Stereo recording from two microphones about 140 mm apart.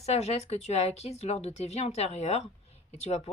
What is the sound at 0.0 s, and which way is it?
Speech, 50° left (ahead or behind).